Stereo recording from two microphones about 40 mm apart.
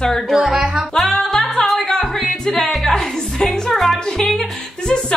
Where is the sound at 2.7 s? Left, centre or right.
Centre.